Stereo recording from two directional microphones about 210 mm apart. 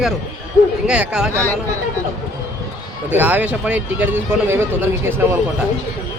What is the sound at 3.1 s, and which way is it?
Speech, 5° right (ahead or behind).